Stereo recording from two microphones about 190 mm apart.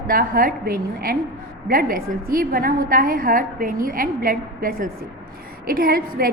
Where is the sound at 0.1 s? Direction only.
50° right (ahead or behind).